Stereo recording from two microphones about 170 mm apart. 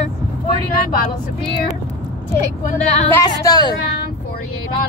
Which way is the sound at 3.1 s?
20° left (ahead or behind).